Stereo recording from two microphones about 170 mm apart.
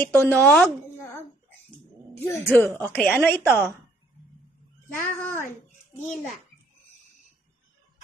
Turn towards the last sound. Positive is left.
turn(degrees=15)  # may be behind; listen again after turning